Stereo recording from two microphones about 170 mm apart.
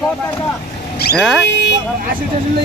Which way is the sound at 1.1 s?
Centre (ahead or behind).